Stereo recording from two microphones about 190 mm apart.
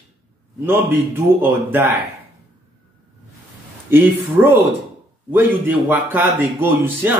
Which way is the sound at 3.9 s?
10° right (ahead or behind).